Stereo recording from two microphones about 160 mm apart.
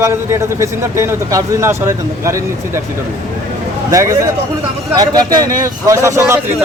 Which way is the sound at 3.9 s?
20° right (ahead or behind).